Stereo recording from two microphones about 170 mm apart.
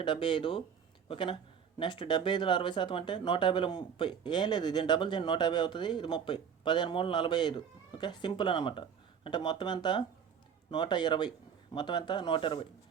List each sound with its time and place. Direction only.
0.0 s speech: 30° left (ahead or behind)